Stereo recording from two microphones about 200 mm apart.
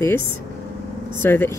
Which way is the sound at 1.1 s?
10° left (ahead or behind).